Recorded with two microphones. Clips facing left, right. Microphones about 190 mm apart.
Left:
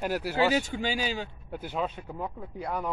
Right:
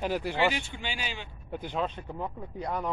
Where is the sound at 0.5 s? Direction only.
40° left (ahead or behind).